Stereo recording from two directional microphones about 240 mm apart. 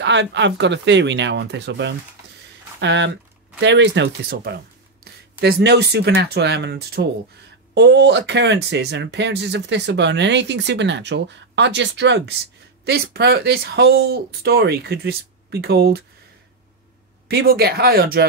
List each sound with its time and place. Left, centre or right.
0.0 s speech: right
17.3 s speech: right